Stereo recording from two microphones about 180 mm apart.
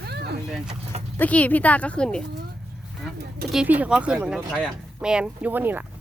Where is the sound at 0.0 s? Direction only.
65° right (ahead or behind).